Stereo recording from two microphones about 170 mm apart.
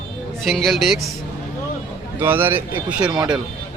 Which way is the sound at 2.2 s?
10° right (ahead or behind).